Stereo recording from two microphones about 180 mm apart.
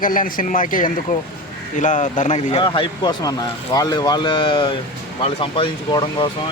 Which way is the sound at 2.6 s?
25° left (ahead or behind).